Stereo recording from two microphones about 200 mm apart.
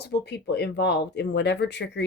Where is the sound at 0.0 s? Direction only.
60° left (ahead or behind).